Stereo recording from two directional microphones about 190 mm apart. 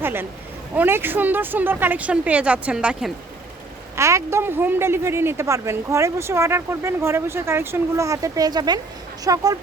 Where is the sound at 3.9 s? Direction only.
15° right (ahead or behind).